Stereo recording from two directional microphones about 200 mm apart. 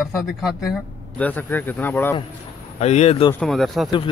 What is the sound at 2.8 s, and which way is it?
Speech, 35° left (ahead or behind).